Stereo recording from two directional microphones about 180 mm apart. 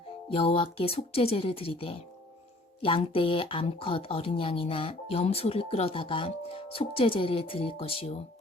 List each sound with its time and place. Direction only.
0.3 s speech: 30° left (ahead or behind)